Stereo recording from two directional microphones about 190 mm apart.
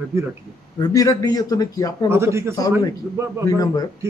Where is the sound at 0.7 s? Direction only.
20° left (ahead or behind).